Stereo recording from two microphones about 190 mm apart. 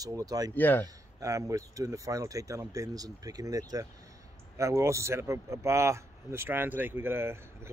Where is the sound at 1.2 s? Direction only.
15° right (ahead or behind).